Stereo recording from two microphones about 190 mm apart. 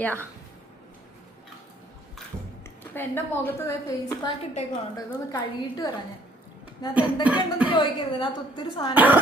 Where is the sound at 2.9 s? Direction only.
10° left (ahead or behind).